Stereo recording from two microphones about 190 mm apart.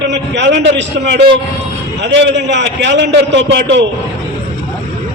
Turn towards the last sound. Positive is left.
turn(degrees=-65)  # may be behind; listen again after turning